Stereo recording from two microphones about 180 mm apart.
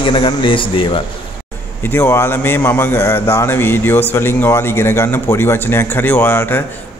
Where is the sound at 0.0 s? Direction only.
25° left (ahead or behind).